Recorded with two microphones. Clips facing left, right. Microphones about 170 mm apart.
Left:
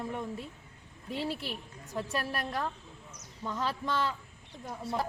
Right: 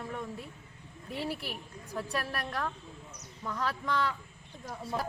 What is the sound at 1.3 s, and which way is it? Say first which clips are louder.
A woman's voice: left 1 dB; 25° left (ahead or behind).